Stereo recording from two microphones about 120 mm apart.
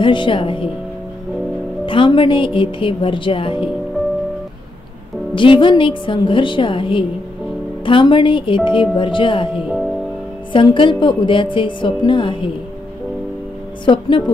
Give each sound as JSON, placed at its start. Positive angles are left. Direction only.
{"t": 0.0, "sound": "a woman's voice", "side_deg": 40}
{"t": 1.9, "sound": "a woman's voice", "side_deg": 45}
{"t": 5.3, "sound": "a woman's voice", "side_deg": 45}
{"t": 10.5, "sound": "a woman's voice", "side_deg": 45}
{"t": 13.8, "sound": "a woman's voice", "side_deg": 40}